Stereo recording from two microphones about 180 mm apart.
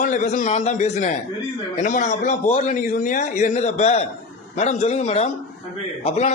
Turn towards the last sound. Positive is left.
turn(degrees=35)  # may be behind; listen again after turning